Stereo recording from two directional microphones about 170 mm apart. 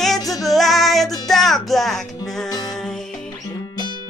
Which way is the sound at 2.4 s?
20° left (ahead or behind).